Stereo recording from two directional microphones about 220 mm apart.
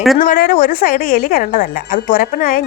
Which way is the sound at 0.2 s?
40° left (ahead or behind).